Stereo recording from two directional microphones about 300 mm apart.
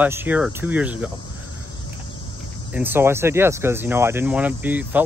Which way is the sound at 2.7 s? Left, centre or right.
Centre.